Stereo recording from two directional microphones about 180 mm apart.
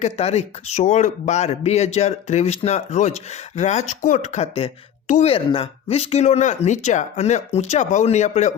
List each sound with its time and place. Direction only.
0.0 s speech: 35° left (ahead or behind)